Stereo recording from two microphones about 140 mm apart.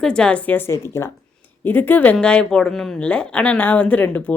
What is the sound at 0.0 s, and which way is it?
A woman's voice, 5° left (ahead or behind).